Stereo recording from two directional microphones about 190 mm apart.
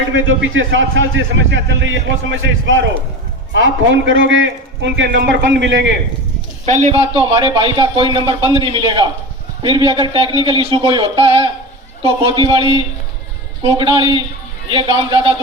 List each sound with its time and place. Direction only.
0.5 s a man's voice: 85° right; by 5.9 s 65° right (ahead or behind)
6.7 s a man's voice: 35° right (ahead or behind)